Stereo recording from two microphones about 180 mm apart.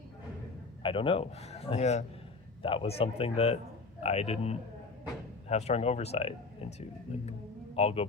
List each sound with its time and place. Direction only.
0.8 s a man's voice: 30° left (ahead or behind)